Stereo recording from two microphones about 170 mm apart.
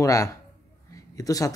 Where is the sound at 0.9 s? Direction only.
20° left (ahead or behind).